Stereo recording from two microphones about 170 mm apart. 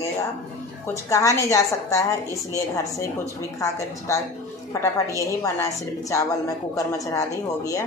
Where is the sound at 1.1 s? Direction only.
20° left (ahead or behind).